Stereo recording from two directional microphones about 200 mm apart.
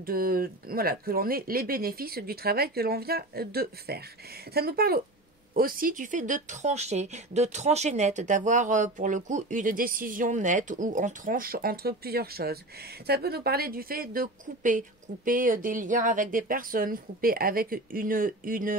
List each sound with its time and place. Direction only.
0.0 s a woman's voice: 45° right (ahead or behind)